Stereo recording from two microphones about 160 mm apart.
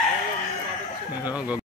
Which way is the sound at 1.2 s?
10° right (ahead or behind).